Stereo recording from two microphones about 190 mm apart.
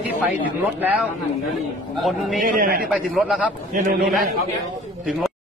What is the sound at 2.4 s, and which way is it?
Speech, 50° right (ahead or behind).